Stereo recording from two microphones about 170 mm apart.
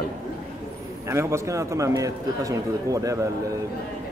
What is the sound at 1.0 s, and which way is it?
Speech, 15° right (ahead or behind).